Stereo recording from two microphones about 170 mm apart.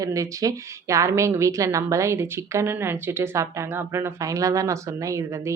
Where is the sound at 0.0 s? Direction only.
20° right (ahead or behind).